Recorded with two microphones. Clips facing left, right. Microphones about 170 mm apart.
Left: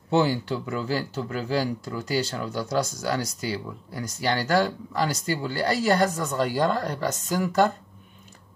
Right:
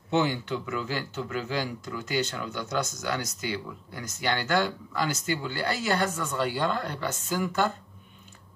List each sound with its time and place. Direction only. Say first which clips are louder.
0.1 s speech: left 3 dB; 35° left (ahead or behind)